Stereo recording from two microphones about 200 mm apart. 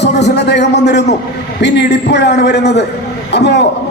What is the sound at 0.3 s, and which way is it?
A man's voice, 60° left (ahead or behind).